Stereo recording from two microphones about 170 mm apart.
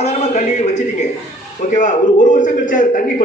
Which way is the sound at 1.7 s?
50° left (ahead or behind).